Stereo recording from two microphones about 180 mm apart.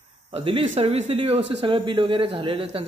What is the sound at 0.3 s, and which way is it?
A man's voice, 30° right (ahead or behind).